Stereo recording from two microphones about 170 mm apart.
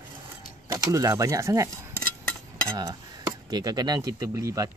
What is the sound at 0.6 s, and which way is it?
Speech, 20° right (ahead or behind).